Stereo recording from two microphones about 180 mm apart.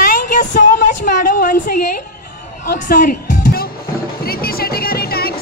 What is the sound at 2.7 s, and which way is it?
Music, 50° left (ahead or behind).